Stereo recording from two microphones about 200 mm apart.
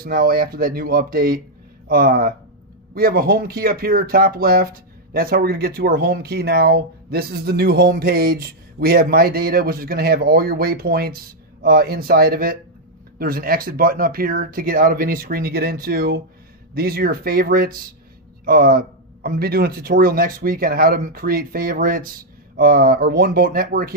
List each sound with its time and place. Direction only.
0.0 s speech: 50° right (ahead or behind)